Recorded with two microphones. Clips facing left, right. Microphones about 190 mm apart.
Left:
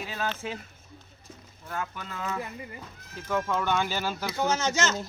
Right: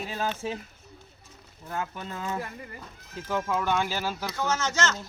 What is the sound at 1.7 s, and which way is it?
Speech, 30° right (ahead or behind).